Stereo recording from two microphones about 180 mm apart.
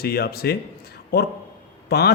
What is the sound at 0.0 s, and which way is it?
A man's voice, 60° left (ahead or behind).